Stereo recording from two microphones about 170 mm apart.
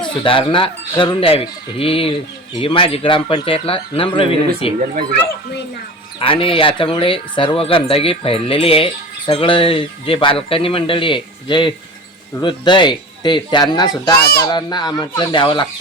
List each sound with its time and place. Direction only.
0.0 s speech: 30° left (ahead or behind)
6.1 s speech: 30° left (ahead or behind)